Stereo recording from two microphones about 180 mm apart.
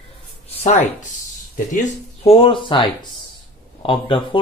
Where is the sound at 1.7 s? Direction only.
35° left (ahead or behind).